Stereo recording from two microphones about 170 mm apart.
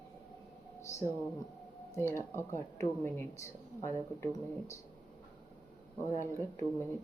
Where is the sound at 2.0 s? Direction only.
15° left (ahead or behind).